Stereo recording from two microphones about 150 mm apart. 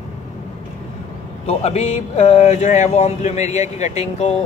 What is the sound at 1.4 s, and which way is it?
Speech, 45° left (ahead or behind).